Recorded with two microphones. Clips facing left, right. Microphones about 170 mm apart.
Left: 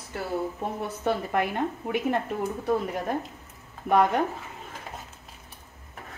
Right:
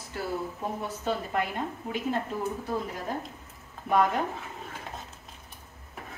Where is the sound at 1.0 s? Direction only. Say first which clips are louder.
Left 4 dB; 65° left (ahead or behind).